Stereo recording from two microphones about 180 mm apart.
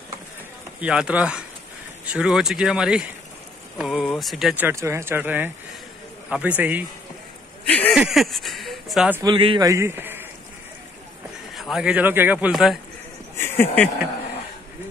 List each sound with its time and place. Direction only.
0.7 s speech: 5° right (ahead or behind)
7.6 s speech: 5° left (ahead or behind)
9.2 s a man's voice: 25° right (ahead or behind)
9.7 s a man's voice: 15° right (ahead or behind)
11.5 s speech: centre (ahead or behind)
13.4 s a sound: 10° left (ahead or behind)